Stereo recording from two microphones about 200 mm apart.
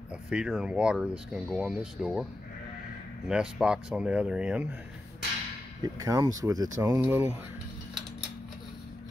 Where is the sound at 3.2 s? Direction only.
5° right (ahead or behind).